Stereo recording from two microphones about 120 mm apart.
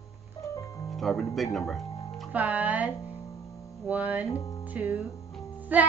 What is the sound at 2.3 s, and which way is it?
Speech, 15° right (ahead or behind).